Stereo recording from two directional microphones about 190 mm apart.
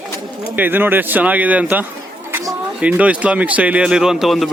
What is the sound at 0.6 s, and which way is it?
Speech, 10° right (ahead or behind).